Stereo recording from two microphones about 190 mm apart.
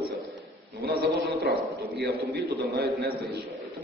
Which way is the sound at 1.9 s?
60° right (ahead or behind).